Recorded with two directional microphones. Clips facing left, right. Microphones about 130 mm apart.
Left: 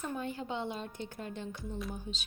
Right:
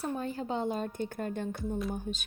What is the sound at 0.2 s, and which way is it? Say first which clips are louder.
A woman's voice: right 4 dB; 40° right (ahead or behind).